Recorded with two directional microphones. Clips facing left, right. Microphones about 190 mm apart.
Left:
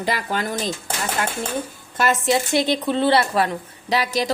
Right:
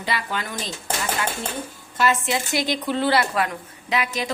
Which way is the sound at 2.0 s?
40° left (ahead or behind).